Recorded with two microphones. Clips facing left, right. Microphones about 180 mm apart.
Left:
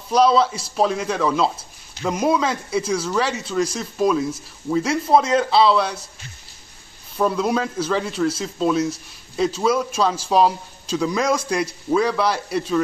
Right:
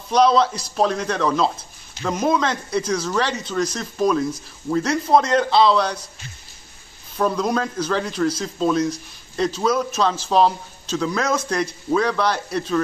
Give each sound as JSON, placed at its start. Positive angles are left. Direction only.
{"t": 0.1, "sound": "speech", "side_deg": 5}
{"t": 7.2, "sound": "speech", "side_deg": 5}